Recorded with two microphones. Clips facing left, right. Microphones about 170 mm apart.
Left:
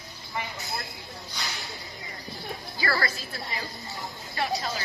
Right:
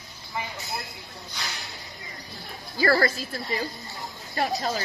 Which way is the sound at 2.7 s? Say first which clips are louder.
Right 8 dB; 45° right (ahead or behind).